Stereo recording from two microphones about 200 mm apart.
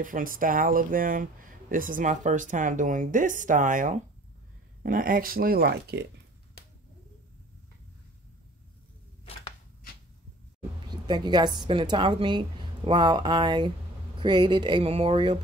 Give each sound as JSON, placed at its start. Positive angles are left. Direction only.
{"t": 0.0, "sound": "speech", "side_deg": -45}
{"t": 10.9, "sound": "a woman's voice", "side_deg": -20}